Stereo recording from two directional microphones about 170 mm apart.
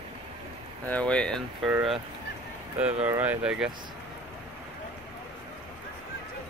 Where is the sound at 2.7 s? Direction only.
10° right (ahead or behind).